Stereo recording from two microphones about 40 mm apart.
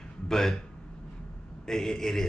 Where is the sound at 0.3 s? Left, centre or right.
Centre.